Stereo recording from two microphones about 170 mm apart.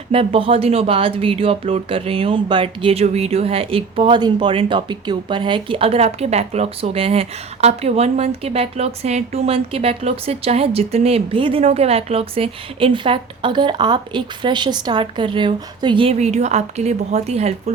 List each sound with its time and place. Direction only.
0.1 s speech: 35° right (ahead or behind)